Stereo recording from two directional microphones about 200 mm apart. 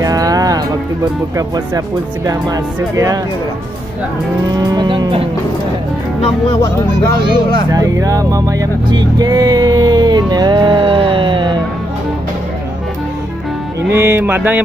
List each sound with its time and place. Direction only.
0.0 s music: 15° right (ahead or behind)
2.2 s speech: 20° right (ahead or behind)
4.6 s moo: 20° right (ahead or behind)
7.7 s speech: 15° right (ahead or behind)
13.8 s speech: 10° right (ahead or behind)